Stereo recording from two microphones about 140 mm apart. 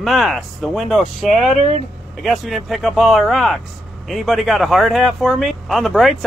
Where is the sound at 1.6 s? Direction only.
50° right (ahead or behind).